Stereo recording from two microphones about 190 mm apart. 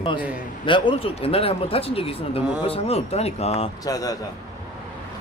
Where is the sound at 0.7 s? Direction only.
25° left (ahead or behind).